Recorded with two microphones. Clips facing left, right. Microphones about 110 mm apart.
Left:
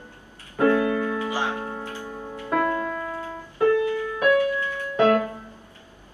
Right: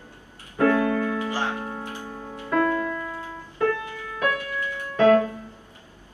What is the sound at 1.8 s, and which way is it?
Music, 15° right (ahead or behind).